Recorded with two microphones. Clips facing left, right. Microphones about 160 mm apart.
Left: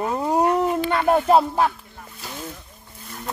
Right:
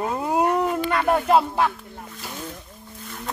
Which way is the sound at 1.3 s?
35° left (ahead or behind).